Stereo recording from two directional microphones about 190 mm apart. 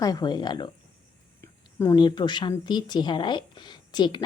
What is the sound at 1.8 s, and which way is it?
A woman's voice, 20° left (ahead or behind).